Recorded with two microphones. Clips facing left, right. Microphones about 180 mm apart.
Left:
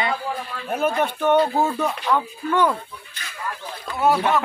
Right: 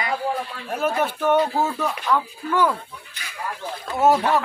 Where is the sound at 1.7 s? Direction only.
15° left (ahead or behind).